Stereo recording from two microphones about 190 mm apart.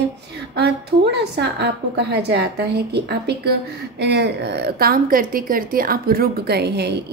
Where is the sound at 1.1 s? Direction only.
60° right (ahead or behind).